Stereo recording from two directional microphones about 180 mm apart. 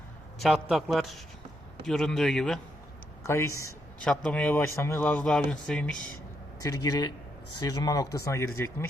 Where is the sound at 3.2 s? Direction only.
15° left (ahead or behind).